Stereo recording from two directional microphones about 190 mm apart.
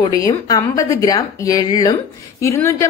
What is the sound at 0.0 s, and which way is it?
A woman's voice, 20° left (ahead or behind).